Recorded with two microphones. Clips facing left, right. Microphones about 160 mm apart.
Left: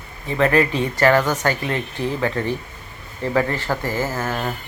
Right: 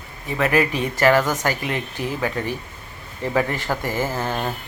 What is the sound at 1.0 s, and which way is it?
Speech, 10° right (ahead or behind).